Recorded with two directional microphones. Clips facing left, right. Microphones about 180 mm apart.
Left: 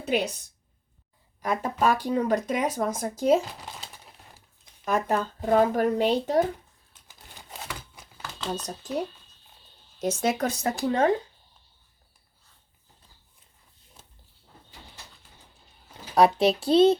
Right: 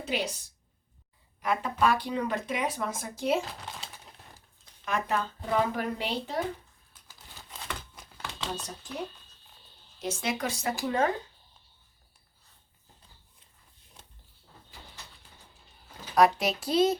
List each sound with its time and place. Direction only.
0.0 s a woman's voice: 55° left (ahead or behind)
1.4 s speech: 40° left (ahead or behind)
3.6 s speech: centre (ahead or behind)
4.9 s speech: 40° left (ahead or behind)
7.7 s crumpling: 5° left (ahead or behind)
10.2 s speech: 40° left (ahead or behind)
16.1 s speech: 30° left (ahead or behind)